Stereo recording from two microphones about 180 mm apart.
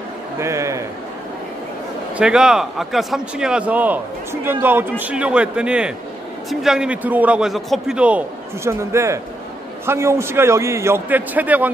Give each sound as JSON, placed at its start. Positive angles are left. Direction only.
{"t": 0.4, "sound": "a man's voice", "side_deg": -15}
{"t": 2.1, "sound": "a man's voice", "side_deg": -5}
{"t": 8.6, "sound": "a man's voice", "side_deg": -15}